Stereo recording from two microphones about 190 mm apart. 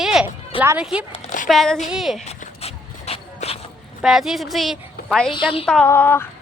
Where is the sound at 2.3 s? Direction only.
35° left (ahead or behind).